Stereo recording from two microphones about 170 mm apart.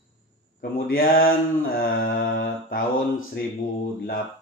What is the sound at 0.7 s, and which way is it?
Mantra, 60° left (ahead or behind).